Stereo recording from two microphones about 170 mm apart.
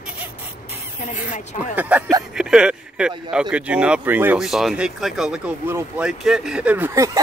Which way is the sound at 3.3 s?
5° right (ahead or behind).